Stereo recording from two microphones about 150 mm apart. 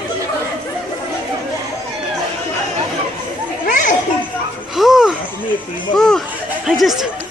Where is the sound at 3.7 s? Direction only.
60° left (ahead or behind).